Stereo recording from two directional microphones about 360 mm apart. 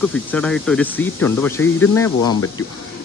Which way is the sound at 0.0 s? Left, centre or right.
Centre.